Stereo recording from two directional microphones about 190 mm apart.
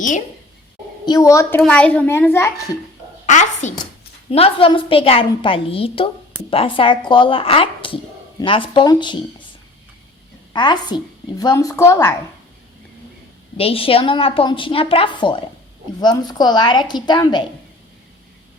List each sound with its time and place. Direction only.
1.0 s a child's voice: 20° left (ahead or behind)
3.2 s a child's voice: 40° left (ahead or behind); by 9.1 s 25° left (ahead or behind)
10.5 s a woman's voice: 25° left (ahead or behind)
13.6 s a woman's voice: 30° left (ahead or behind)